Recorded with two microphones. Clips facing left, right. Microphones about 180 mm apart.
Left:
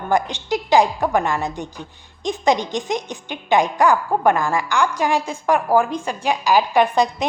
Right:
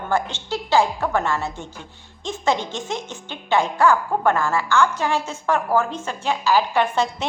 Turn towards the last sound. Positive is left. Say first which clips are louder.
# left 3 dB
turn(degrees=15)  # may be behind; listen again after turning